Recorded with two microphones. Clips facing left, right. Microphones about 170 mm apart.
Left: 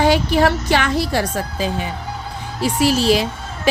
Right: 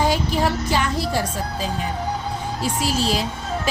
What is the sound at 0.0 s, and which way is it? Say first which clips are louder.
A woman's voice: left 5 dB; 75° left (ahead or behind).